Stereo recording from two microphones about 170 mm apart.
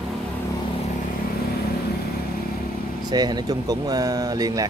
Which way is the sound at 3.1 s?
25° right (ahead or behind).